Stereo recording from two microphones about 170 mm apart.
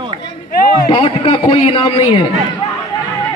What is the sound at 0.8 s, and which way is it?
A man's voice, 30° left (ahead or behind).